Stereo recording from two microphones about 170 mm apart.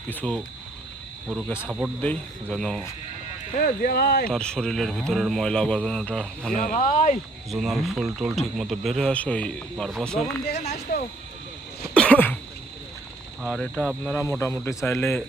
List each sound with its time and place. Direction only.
0.1 s speech: 10° left (ahead or behind)
1.6 s speech: 5° right (ahead or behind)
2.0 s speech: 5° left (ahead or behind)
3.7 s speech: 60° left (ahead or behind)
4.3 s speech: 5° left (ahead or behind)
6.6 s speech: 50° left (ahead or behind)
7.5 s speech: centre (ahead or behind)
10.6 s speech: 40° left (ahead or behind)
11.9 s a sound: 10° left (ahead or behind)
13.4 s speech: centre (ahead or behind)